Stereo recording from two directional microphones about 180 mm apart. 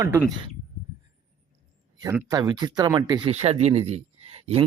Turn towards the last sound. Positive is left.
turn(degrees=-35)  # may be behind; listen again after turning